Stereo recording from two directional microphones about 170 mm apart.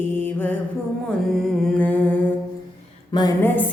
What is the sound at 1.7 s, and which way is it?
Music, 10° left (ahead or behind).